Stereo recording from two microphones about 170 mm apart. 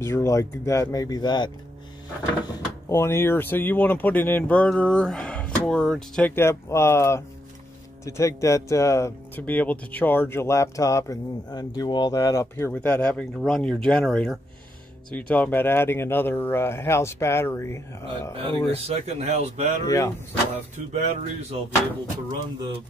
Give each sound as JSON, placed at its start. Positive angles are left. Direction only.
{"t": 0.0, "sound": "speech", "side_deg": 20}
{"t": 2.4, "sound": "speech", "side_deg": 15}
{"t": 18.3, "sound": "speech", "side_deg": -35}
{"t": 19.8, "sound": "speech", "side_deg": 20}
{"t": 20.9, "sound": "speech", "side_deg": -40}